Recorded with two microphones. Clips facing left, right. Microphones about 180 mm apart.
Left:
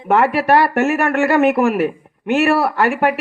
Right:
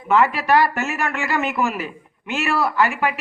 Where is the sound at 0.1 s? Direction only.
60° left (ahead or behind).